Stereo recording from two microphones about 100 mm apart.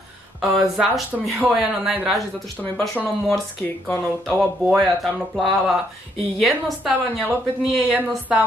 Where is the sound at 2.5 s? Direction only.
15° left (ahead or behind).